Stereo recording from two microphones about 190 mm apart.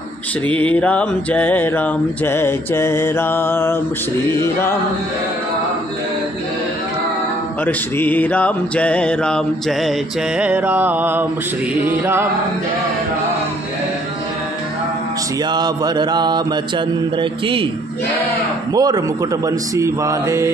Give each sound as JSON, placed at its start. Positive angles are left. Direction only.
{"t": 0.5, "sound": "mantra", "side_deg": 10}
{"t": 7.6, "sound": "mantra", "side_deg": 10}
{"t": 11.8, "sound": "speech", "side_deg": -10}
{"t": 15.5, "sound": "mantra", "side_deg": -20}
{"t": 18.7, "sound": "speech", "side_deg": -20}